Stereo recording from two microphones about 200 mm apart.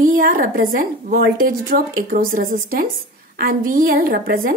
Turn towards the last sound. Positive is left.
turn(degrees=-45)  # may be behind; listen again after turning